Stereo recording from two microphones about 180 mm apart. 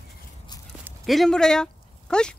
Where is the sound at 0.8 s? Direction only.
Centre (ahead or behind).